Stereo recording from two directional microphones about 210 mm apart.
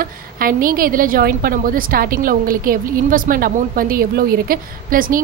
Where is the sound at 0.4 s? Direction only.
40° right (ahead or behind).